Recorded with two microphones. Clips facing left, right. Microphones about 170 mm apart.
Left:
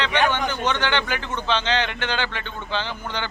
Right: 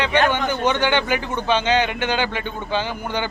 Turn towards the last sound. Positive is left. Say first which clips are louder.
# right 4 dB
turn(degrees=-10)  # may be behind; listen again after turning